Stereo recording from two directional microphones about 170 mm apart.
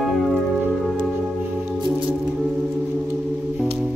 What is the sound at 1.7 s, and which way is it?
Music, 30° right (ahead or behind).